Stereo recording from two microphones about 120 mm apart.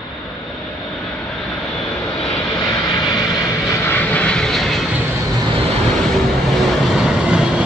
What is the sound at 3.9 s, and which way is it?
Vehicle, 10° left (ahead or behind).